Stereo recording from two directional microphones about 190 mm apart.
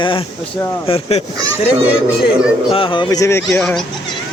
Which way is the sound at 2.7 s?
25° left (ahead or behind).